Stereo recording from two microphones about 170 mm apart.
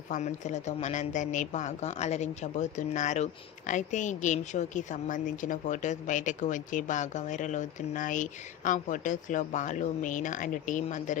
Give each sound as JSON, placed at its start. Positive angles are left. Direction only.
{"t": 0.1, "sound": "a woman's voice", "side_deg": 45}